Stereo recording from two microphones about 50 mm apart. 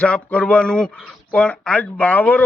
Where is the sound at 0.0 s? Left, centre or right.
Left.